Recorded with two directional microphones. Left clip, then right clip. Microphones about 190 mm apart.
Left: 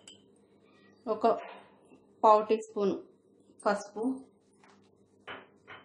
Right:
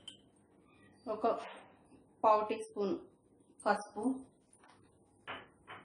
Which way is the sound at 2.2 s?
50° left (ahead or behind).